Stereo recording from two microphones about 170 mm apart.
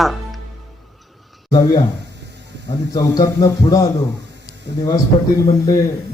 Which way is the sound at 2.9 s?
20° left (ahead or behind).